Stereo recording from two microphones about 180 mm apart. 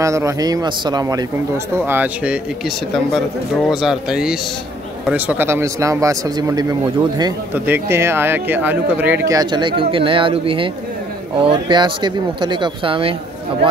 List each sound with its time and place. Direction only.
0.0 s speech: 15° right (ahead or behind)
1.9 s speech: 10° right (ahead or behind)
7.5 s speech: 10° right (ahead or behind); by 13.1 s 30° right (ahead or behind)